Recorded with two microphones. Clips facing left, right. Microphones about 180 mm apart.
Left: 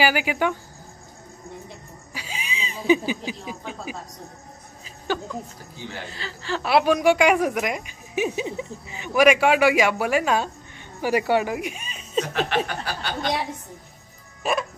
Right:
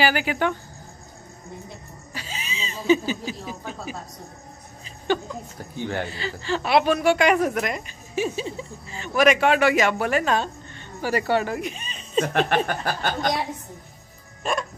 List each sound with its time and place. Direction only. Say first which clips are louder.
0.0 s a woman's voice: even; 10° left (ahead or behind)
2.1 s speech: left 1 dB; 10° left (ahead or behind)
4.8 s music: right 3 dB; 5° left (ahead or behind)
5.8 s speech: right 8 dB; 60° right (ahead or behind)
6.1 s a woman's voice: right 3 dB; centre (ahead or behind)
12.2 s speech: right 2 dB; 50° right (ahead or behind)
14.4 s music: left 2 dB; 5° left (ahead or behind)